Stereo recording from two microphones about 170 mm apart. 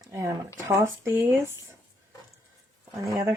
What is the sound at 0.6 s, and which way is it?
Speech, 15° right (ahead or behind).